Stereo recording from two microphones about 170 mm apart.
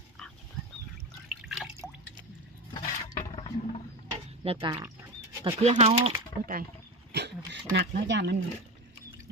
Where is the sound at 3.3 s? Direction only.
35° left (ahead or behind).